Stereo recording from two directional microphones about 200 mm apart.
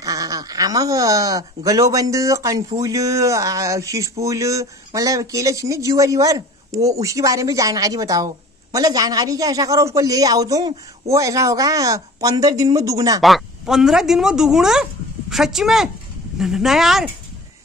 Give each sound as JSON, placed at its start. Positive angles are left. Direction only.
{"t": 0.0, "sound": "a man's voice", "side_deg": -15}
{"t": 13.2, "sound": "speech", "side_deg": 0}